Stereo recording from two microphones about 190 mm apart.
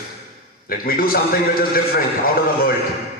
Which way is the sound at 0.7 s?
50° left (ahead or behind).